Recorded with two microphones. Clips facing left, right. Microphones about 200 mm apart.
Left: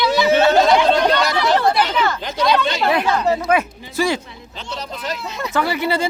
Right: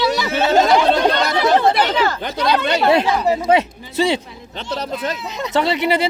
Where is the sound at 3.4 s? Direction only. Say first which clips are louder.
Right 3 dB; 20° right (ahead or behind).